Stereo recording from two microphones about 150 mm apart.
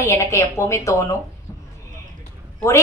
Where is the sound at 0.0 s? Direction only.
20° left (ahead or behind).